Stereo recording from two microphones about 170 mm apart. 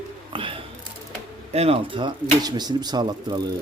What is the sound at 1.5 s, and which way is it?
Speech, 35° right (ahead or behind).